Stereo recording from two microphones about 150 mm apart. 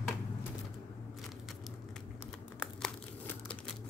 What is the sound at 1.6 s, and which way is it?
Crumpling, 5° left (ahead or behind).